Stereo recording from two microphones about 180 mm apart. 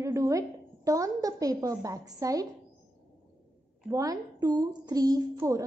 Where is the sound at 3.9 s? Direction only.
20° right (ahead or behind).